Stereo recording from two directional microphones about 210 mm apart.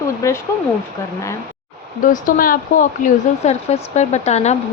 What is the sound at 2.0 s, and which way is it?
Speech, 40° left (ahead or behind).